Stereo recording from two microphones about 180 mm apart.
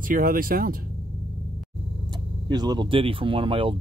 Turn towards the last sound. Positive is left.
turn(degrees=-30)  # may be behind; listen again after turning